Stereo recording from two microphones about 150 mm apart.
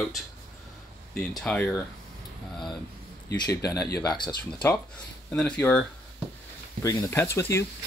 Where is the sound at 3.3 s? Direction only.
20° left (ahead or behind).